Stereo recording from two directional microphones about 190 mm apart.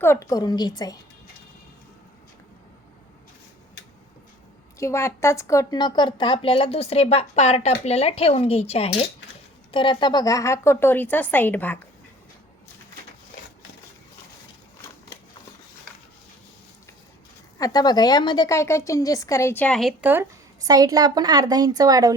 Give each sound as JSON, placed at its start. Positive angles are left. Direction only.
{"t": 0.0, "sound": "a woman's voice", "side_deg": 15}
{"t": 4.8, "sound": "a woman's voice", "side_deg": 15}
{"t": 17.6, "sound": "a woman's voice", "side_deg": 20}
{"t": 20.0, "sound": "a woman's voice", "side_deg": -10}